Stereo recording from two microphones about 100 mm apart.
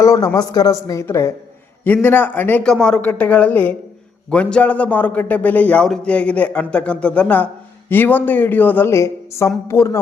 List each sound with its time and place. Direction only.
0.0 s a man's voice: 35° left (ahead or behind)
1.8 s a man's voice: 20° left (ahead or behind)